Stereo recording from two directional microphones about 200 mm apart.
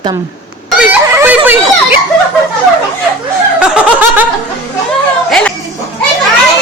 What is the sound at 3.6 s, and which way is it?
Snicker, 5° right (ahead or behind).